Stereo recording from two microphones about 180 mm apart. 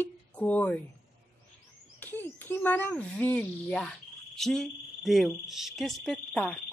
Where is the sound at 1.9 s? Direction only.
10° left (ahead or behind).